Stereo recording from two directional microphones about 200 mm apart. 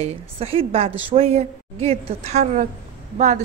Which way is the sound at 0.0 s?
30° right (ahead or behind).